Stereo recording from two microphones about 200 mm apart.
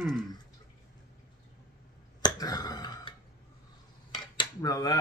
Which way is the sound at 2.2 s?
20° left (ahead or behind).